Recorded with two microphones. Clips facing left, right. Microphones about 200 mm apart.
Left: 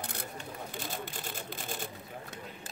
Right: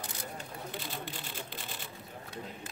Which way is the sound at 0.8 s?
45° left (ahead or behind).